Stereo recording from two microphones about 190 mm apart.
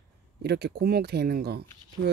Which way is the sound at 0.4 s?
60° right (ahead or behind).